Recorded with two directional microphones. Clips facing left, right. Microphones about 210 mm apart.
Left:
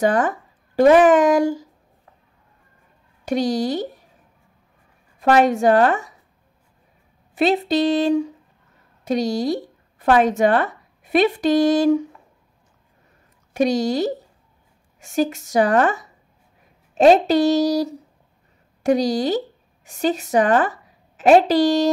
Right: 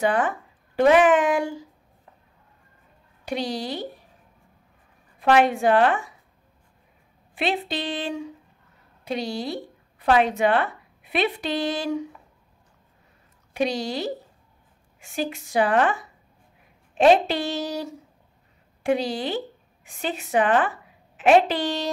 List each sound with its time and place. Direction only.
0.0 s speech: 45° left (ahead or behind)
3.3 s speech: 45° left (ahead or behind)
5.2 s speech: 40° left (ahead or behind)
7.3 s a woman's voice: 40° left (ahead or behind)
13.5 s a woman's voice: 45° left (ahead or behind)